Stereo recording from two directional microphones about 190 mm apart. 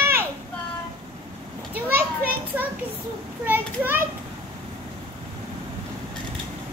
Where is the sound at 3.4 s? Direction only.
10° right (ahead or behind).